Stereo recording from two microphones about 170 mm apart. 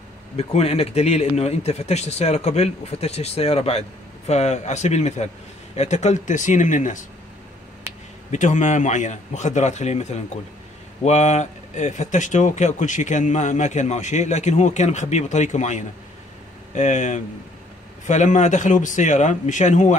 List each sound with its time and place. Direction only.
0.4 s speech: 35° left (ahead or behind)
8.3 s speech: 45° left (ahead or behind)